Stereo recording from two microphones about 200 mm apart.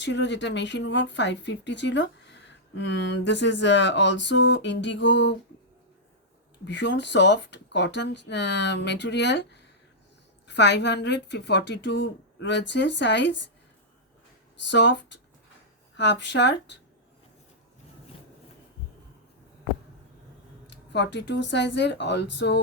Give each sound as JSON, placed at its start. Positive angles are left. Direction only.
{"t": 0.0, "sound": "speech", "side_deg": 65}
{"t": 6.7, "sound": "speech", "side_deg": 60}
{"t": 14.6, "sound": "speech", "side_deg": 60}
{"t": 20.9, "sound": "speech", "side_deg": 60}